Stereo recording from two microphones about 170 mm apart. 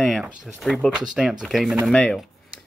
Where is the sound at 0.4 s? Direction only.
Centre (ahead or behind).